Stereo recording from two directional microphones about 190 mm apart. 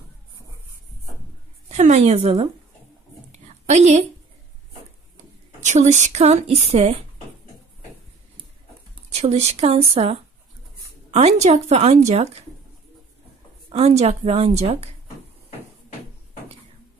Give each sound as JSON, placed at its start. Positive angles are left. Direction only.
{"t": 1.7, "sound": "a woman's voice", "side_deg": -35}
{"t": 3.3, "sound": "a sound", "side_deg": -35}
{"t": 5.6, "sound": "a woman's voice", "side_deg": -35}
{"t": 9.1, "sound": "a woman's voice", "side_deg": -35}
{"t": 13.7, "sound": "a woman's voice", "side_deg": -30}